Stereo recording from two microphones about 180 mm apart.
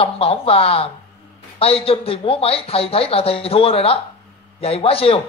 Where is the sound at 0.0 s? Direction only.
30° left (ahead or behind).